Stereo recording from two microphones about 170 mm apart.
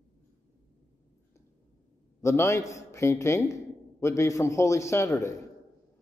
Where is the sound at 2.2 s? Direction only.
15° left (ahead or behind).